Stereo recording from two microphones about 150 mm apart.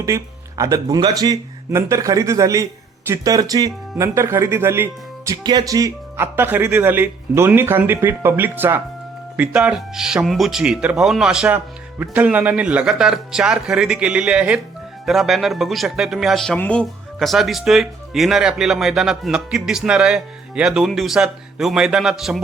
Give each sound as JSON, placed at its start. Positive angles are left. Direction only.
{"t": 0.0, "sound": "speech", "side_deg": -20}